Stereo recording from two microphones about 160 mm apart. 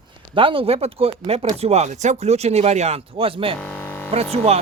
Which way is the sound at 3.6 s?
10° left (ahead or behind).